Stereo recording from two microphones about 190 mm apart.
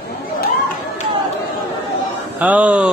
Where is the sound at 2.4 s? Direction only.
5° right (ahead or behind).